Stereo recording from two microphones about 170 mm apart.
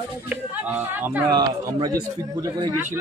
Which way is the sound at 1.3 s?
25° right (ahead or behind).